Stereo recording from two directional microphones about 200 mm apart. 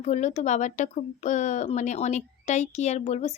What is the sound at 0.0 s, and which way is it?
Speech, 35° left (ahead or behind).